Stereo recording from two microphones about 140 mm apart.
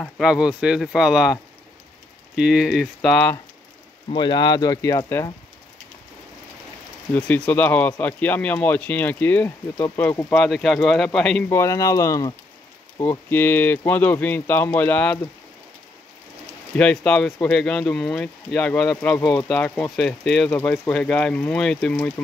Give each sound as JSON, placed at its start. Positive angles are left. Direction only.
{"t": 0.2, "sound": "speech", "side_deg": -5}
{"t": 4.1, "sound": "speech", "side_deg": 30}
{"t": 7.2, "sound": "speech", "side_deg": 10}
{"t": 11.4, "sound": "speech", "side_deg": 20}
{"t": 13.0, "sound": "speech", "side_deg": 15}
{"t": 16.7, "sound": "speech", "side_deg": 5}
{"t": 19.1, "sound": "speech", "side_deg": 25}
{"t": 19.4, "sound": "speech", "side_deg": 10}